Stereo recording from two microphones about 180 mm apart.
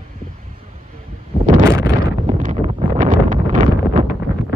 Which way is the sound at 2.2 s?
40° right (ahead or behind).